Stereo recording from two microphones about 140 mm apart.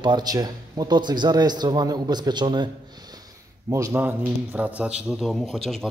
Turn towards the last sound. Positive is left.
turn(degrees=0)  # may be behind; listen again after turning